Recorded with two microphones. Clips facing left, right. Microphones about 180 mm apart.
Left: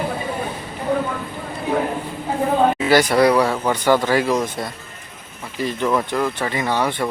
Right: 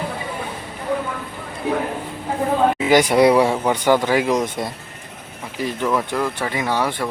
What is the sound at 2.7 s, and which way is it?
Speech, 15° right (ahead or behind).